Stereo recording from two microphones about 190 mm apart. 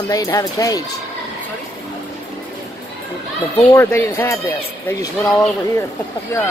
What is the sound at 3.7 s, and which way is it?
Speech, 10° left (ahead or behind).